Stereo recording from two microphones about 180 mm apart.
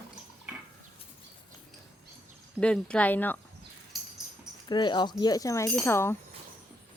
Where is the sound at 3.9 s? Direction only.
Centre (ahead or behind).